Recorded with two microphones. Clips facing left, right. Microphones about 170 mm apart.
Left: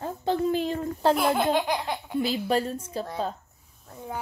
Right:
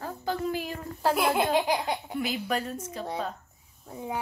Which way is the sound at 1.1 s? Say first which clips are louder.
Left 2 dB; 5° right (ahead or behind).